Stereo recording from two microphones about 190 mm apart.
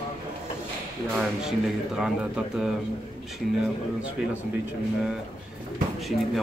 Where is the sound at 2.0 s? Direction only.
5° right (ahead or behind).